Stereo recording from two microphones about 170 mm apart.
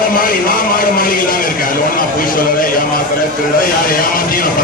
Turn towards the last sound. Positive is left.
turn(degrees=60)  # may be behind; listen again after turning